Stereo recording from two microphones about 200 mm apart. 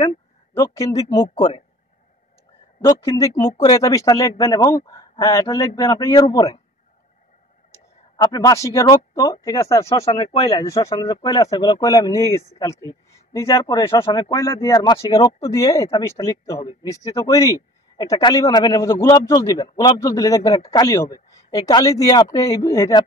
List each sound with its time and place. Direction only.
0.6 s speech: 15° left (ahead or behind)
1.3 s speech: 35° left (ahead or behind)
2.8 s speech: 15° left (ahead or behind)
7.7 s speech: 20° left (ahead or behind)
10.0 s speech: 30° left (ahead or behind)
10.5 s speech: 15° left (ahead or behind)